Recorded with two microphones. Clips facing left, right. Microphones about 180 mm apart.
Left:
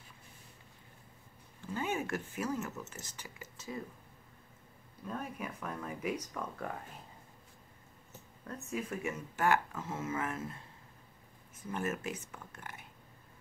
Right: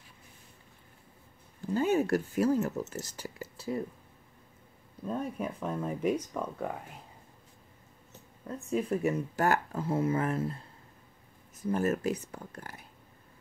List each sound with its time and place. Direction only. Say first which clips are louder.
1.6 s speech: right 9 dB; 40° right (ahead or behind)
5.0 s speech: right 7 dB; 30° right (ahead or behind)
8.5 s speech: right 8 dB; 30° right (ahead or behind)